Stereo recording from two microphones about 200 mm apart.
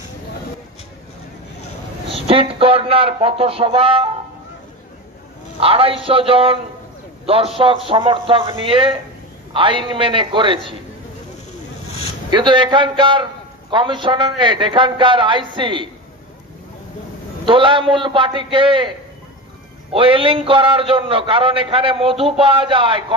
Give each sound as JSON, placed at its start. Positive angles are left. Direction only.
{"t": 2.2, "sound": "a man's voice", "side_deg": -30}
{"t": 5.6, "sound": "a man's voice", "side_deg": -30}
{"t": 12.3, "sound": "a man's voice", "side_deg": -25}
{"t": 17.5, "sound": "a man's voice", "side_deg": -25}